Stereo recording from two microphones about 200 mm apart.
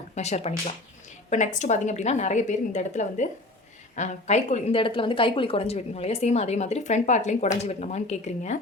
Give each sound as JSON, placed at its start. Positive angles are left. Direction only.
{"t": 0.2, "sound": "a woman's voice", "side_deg": 35}